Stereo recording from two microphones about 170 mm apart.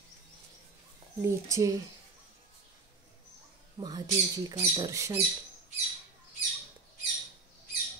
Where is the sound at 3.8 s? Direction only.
25° right (ahead or behind).